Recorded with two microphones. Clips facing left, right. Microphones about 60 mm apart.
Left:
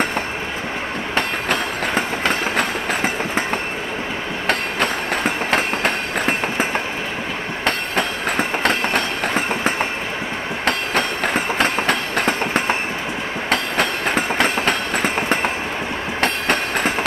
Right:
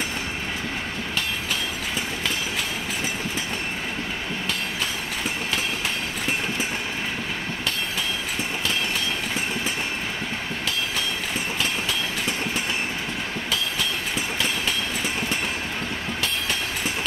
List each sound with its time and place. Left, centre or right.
1.1 s train: left
4.5 s train: left